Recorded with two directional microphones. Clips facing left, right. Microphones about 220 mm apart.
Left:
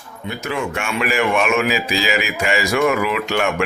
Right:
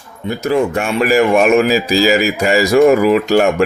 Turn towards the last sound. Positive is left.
turn(degrees=-40)  # may be behind; listen again after turning